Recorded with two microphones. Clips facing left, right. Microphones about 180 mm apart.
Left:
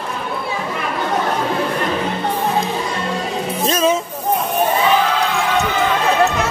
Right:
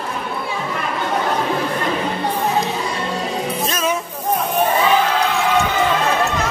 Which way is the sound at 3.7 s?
30° left (ahead or behind).